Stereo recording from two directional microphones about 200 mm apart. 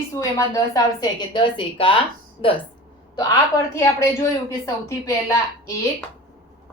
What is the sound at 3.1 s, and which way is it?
A woman's voice, 15° left (ahead or behind).